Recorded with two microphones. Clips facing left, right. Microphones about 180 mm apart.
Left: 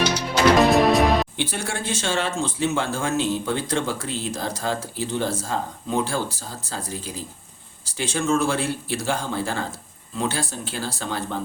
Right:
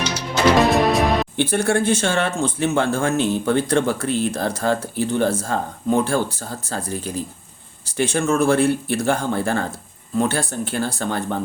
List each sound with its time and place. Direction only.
0.6 s music: centre (ahead or behind)
1.4 s speech: 55° right (ahead or behind)